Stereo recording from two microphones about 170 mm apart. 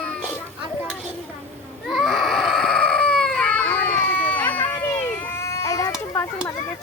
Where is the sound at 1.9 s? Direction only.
Centre (ahead or behind); by 6.5 s 20° left (ahead or behind).